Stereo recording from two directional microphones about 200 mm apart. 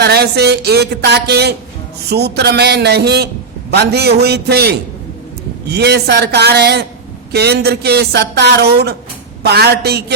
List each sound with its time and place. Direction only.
0.0 s speech: 55° right (ahead or behind)